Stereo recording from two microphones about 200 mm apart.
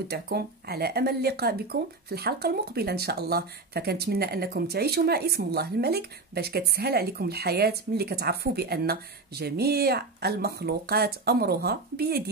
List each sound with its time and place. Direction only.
0.1 s speech: 50° right (ahead or behind)